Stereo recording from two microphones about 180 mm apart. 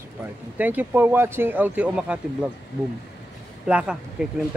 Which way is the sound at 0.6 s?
10° right (ahead or behind).